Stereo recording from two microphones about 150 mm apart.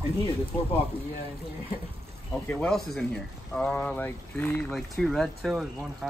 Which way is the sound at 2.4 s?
5° left (ahead or behind).